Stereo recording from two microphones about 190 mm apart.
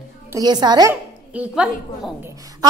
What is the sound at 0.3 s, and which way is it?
Speech, 20° right (ahead or behind).